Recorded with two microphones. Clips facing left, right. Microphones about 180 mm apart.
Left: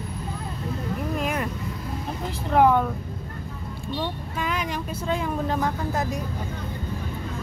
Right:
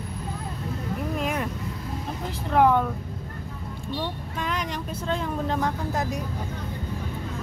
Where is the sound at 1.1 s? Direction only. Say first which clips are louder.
Left 1 dB; centre (ahead or behind).